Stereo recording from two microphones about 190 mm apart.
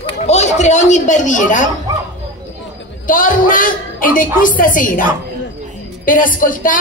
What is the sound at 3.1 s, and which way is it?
A man's voice, 45° left (ahead or behind).